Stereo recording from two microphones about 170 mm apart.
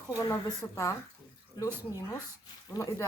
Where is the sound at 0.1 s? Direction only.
20° left (ahead or behind).